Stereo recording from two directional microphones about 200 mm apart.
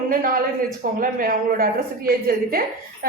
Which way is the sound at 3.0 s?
45° right (ahead or behind).